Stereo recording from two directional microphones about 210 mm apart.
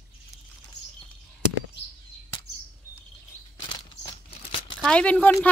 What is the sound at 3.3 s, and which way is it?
Bird flight, 90° right.